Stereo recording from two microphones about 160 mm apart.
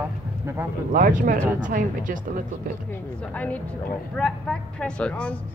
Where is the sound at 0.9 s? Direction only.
55° right (ahead or behind).